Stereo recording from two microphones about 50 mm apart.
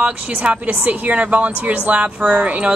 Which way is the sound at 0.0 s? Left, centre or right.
Right.